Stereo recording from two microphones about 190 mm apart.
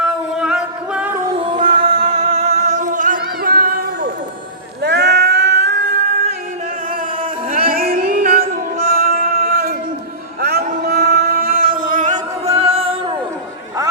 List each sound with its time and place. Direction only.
0.0 s music: 5° right (ahead or behind)
1.4 s singing: 30° right (ahead or behind)
1.8 s music: 30° right (ahead or behind); by 4.1 s 50° right (ahead or behind)
4.8 s cat: 60° right (ahead or behind)
7.2 s music: 50° right (ahead or behind)
10.4 s a sound: 55° right (ahead or behind)
11.8 s music: 45° right (ahead or behind)